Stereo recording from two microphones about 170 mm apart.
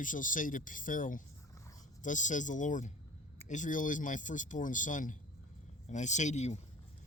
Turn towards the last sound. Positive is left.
turn(degrees=40)  # may be behind; listen again after turning